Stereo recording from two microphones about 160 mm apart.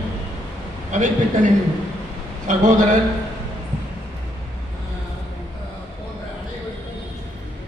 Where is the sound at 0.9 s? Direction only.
50° right (ahead or behind).